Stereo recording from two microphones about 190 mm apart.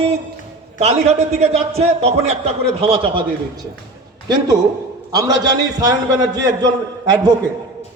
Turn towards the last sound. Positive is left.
turn(degrees=-20)  # may be behind; listen again after turning